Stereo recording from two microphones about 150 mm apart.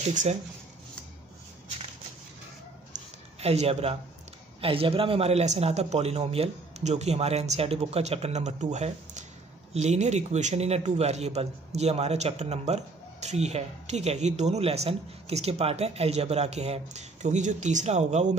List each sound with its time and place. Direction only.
0.0 s speech: 50° right (ahead or behind)
2.9 s a sound: 45° right (ahead or behind)
4.6 s speech: 40° right (ahead or behind)